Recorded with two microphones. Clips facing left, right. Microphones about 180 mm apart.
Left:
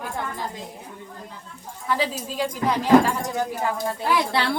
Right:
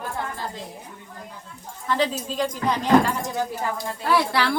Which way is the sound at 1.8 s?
10° left (ahead or behind).